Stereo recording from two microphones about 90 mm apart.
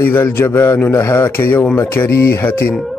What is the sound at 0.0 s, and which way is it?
A man's voice, 25° left (ahead or behind).